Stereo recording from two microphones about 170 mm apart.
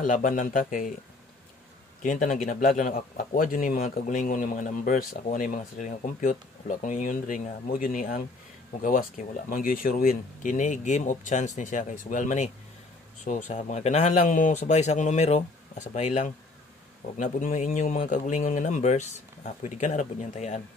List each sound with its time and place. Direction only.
0.0 s speech: 50° left (ahead or behind)
2.0 s speech: 50° left (ahead or behind)